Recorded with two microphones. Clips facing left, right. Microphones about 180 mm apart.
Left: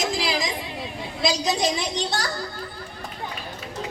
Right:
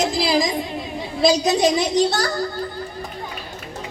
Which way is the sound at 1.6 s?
40° right (ahead or behind).